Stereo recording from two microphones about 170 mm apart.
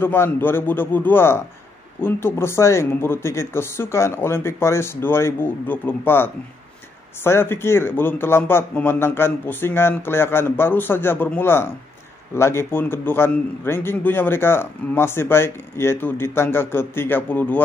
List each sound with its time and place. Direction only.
0.0 s a man's voice: 10° left (ahead or behind)